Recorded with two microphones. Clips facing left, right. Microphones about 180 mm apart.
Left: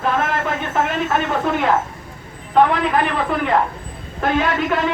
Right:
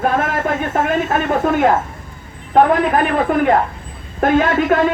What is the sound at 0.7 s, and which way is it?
A man's voice, 50° right (ahead or behind).